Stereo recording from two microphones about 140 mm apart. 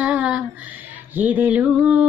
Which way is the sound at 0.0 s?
10° right (ahead or behind).